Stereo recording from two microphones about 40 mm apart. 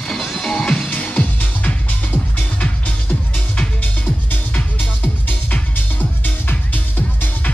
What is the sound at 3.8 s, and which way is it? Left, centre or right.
Music, left.